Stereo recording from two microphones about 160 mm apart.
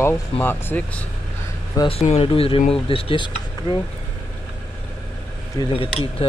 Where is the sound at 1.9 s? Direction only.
40° left (ahead or behind).